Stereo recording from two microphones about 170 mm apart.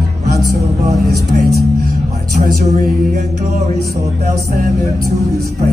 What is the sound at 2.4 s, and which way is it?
Music, 60° right (ahead or behind).